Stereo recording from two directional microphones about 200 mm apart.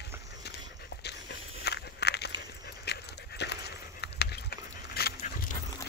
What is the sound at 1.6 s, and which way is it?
Walk, 55° left (ahead or behind).